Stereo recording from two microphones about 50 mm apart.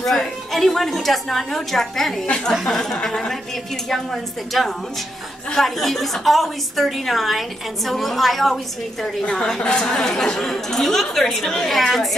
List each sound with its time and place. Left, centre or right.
0.0 s a woman's voice: centre